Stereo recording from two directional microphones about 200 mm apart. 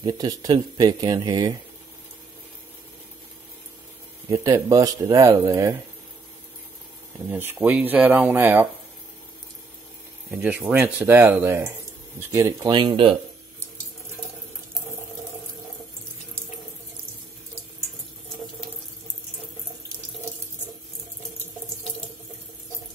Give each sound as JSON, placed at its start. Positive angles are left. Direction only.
{"t": 0.0, "sound": "speech", "side_deg": -20}
{"t": 4.3, "sound": "speech", "side_deg": -15}
{"t": 7.2, "sound": "speech", "side_deg": -10}
{"t": 10.3, "sound": "speech", "side_deg": -5}